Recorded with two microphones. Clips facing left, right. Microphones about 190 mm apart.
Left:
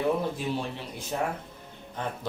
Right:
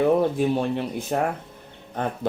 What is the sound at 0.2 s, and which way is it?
Speech, 55° right (ahead or behind).